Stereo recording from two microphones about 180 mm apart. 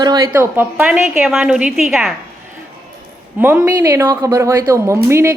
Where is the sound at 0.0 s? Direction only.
20° right (ahead or behind); by 2.1 s centre (ahead or behind).